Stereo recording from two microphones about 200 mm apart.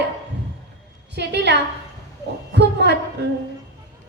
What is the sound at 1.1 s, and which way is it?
Speech, 55° right (ahead or behind).